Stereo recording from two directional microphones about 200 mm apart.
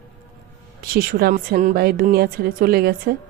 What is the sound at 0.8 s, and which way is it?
Speech, 50° right (ahead or behind).